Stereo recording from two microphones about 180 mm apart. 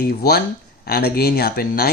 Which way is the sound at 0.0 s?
60° left (ahead or behind).